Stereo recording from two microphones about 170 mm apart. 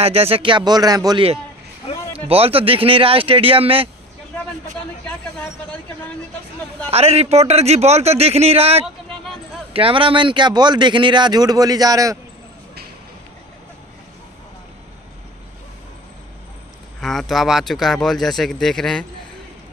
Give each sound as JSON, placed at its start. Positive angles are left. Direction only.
{"t": 0.0, "sound": "speech", "side_deg": -35}
{"t": 2.1, "sound": "a man's voice", "side_deg": -35}
{"t": 6.9, "sound": "a man's voice", "side_deg": -35}
{"t": 8.8, "sound": "a sound", "side_deg": 0}
{"t": 9.7, "sound": "speech", "side_deg": -35}
{"t": 17.0, "sound": "speech", "side_deg": 0}